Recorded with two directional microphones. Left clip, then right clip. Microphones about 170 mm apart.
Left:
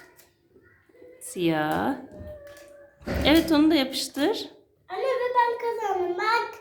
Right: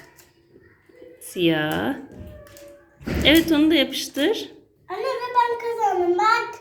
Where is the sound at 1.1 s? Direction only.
5° left (ahead or behind).